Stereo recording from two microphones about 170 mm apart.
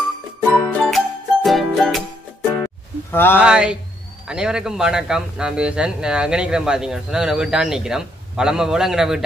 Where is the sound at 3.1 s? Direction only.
10° left (ahead or behind).